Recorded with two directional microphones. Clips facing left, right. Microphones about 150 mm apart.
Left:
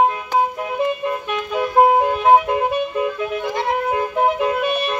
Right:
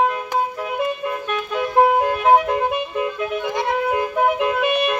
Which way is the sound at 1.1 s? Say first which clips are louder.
Left 1 dB; 10° left (ahead or behind).